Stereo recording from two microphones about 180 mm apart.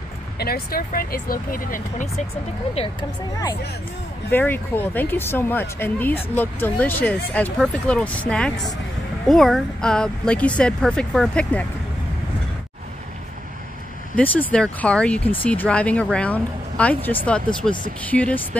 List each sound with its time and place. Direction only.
0.4 s speech: 55° left (ahead or behind)
2.7 s speech: 30° left (ahead or behind)
4.3 s speech: 10° left (ahead or behind)
14.1 s speech: 10° left (ahead or behind)